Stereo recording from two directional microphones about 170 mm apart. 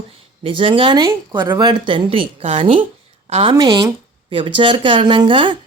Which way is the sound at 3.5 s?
25° right (ahead or behind).